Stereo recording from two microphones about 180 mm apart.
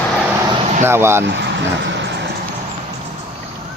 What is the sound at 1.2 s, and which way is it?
Vehicle, 75° right (ahead or behind).